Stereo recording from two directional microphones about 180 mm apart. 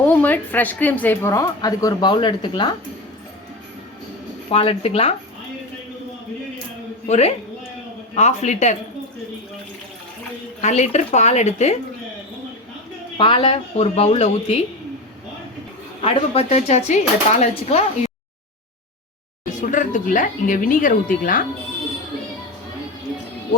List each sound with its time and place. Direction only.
0.0 s a woman's voice: 10° left (ahead or behind); by 2.7 s 25° left (ahead or behind)
4.5 s speech: 35° left (ahead or behind)
7.1 s speech: 35° left (ahead or behind)
10.6 s speech: 40° left (ahead or behind)
13.1 s speech: 30° left (ahead or behind)
16.0 s speech: 30° left (ahead or behind)
19.6 s speech: 45° left (ahead or behind)